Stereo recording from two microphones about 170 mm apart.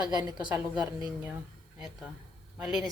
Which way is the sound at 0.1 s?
25° right (ahead or behind).